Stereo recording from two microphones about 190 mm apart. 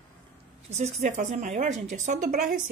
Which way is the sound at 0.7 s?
35° right (ahead or behind).